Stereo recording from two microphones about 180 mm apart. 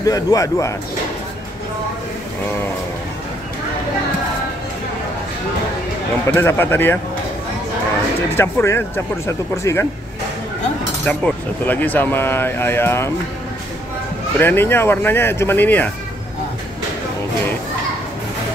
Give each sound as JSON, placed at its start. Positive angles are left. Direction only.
{"t": 0.0, "sound": "a man's voice", "side_deg": 20}
{"t": 6.3, "sound": "speech", "side_deg": 15}
{"t": 8.4, "sound": "speech", "side_deg": 15}
{"t": 11.1, "sound": "speech", "side_deg": 10}
{"t": 14.4, "sound": "speech", "side_deg": 10}